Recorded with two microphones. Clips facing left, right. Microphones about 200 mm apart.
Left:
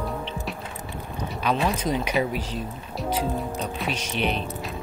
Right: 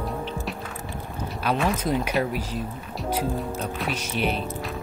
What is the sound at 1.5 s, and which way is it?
Speech, 15° left (ahead or behind).